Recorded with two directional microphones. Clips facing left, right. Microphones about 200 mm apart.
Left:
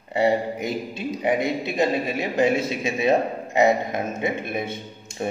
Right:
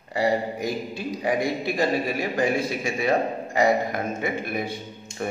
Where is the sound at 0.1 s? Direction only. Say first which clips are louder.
Left 3 dB; 25° left (ahead or behind).